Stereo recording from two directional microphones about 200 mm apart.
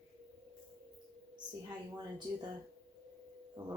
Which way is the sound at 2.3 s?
20° right (ahead or behind).